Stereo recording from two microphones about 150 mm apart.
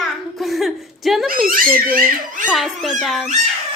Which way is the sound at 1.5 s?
70° right (ahead or behind).